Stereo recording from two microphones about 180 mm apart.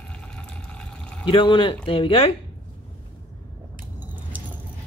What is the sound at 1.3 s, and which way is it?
A woman's voice, 25° left (ahead or behind).